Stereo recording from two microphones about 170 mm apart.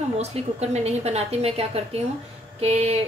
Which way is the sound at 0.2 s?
40° right (ahead or behind).